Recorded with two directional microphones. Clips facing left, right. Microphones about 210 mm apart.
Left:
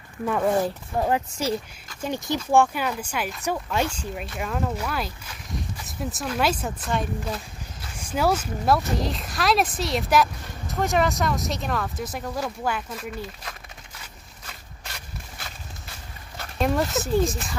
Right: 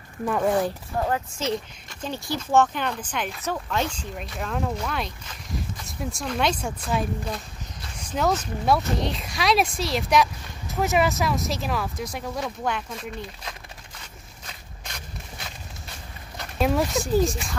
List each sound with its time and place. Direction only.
0.2 s speech: centre (ahead or behind)
1.0 s speech: 15° left (ahead or behind)
16.3 s speech: centre (ahead or behind)